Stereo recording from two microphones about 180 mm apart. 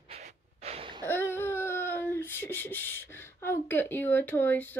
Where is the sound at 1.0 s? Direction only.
15° left (ahead or behind).